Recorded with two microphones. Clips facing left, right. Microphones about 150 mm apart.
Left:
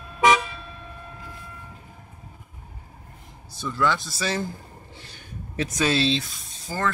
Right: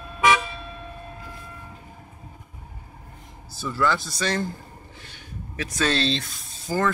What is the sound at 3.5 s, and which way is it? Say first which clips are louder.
Speech: even; 5° right (ahead or behind).